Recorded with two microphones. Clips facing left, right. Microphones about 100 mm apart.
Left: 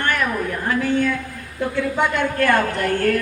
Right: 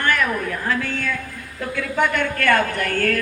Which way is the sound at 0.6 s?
20° left (ahead or behind).